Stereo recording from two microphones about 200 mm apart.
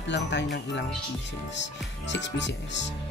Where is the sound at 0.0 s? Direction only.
60° left (ahead or behind).